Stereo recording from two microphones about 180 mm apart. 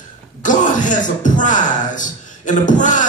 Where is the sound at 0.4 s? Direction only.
45° left (ahead or behind).